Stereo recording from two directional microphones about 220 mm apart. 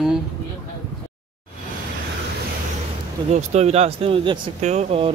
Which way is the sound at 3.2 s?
30° right (ahead or behind).